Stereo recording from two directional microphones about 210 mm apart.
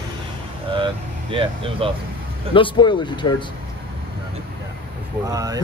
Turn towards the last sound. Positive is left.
turn(degrees=-15)  # may be behind; listen again after turning